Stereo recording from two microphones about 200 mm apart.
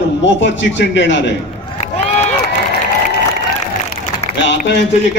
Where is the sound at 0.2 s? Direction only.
65° left (ahead or behind).